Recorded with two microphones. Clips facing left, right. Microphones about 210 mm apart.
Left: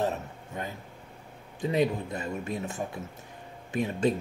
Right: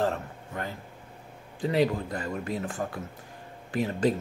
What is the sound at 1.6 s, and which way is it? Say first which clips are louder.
Speech: right 1 dB; 20° left (ahead or behind).